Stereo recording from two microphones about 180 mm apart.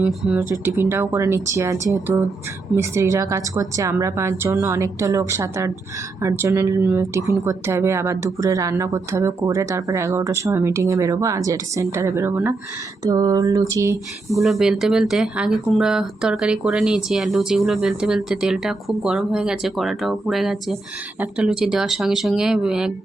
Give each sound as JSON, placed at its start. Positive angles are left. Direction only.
{"t": 0.0, "sound": "speech", "side_deg": -5}
{"t": 13.1, "sound": "a sound", "side_deg": -20}
{"t": 14.3, "sound": "speech", "side_deg": 0}